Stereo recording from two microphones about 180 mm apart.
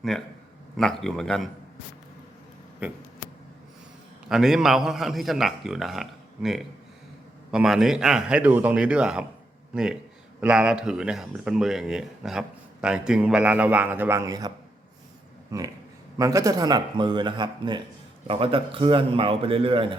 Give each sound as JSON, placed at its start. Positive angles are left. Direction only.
{"t": 0.1, "sound": "speech", "side_deg": 0}
{"t": 4.3, "sound": "speech", "side_deg": 0}
{"t": 15.5, "sound": "speech", "side_deg": -20}